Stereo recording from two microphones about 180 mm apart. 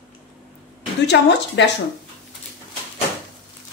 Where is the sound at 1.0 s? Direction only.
75° left (ahead or behind).